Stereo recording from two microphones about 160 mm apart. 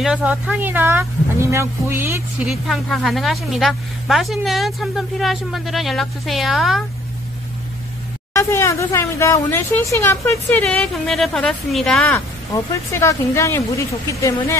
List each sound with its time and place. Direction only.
0.0 s a woman's voice: 5° right (ahead or behind)
2.4 s a woman's voice: centre (ahead or behind)
8.3 s speech: 15° left (ahead or behind)
12.1 s speech: 20° left (ahead or behind)